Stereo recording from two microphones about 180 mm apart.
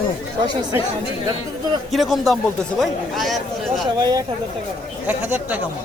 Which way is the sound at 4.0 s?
20° right (ahead or behind).